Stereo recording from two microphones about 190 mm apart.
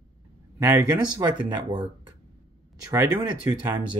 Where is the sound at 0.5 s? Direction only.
15° right (ahead or behind).